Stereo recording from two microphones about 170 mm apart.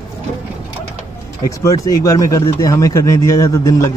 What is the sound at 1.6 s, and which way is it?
Speech, 20° left (ahead or behind).